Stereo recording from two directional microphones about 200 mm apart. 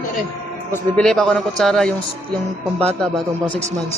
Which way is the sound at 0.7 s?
5° left (ahead or behind).